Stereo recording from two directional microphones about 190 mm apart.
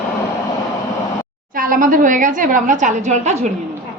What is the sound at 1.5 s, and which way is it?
A woman's voice, 45° right (ahead or behind).